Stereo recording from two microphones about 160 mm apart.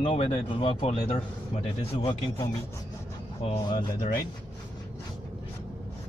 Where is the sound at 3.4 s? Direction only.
30° left (ahead or behind).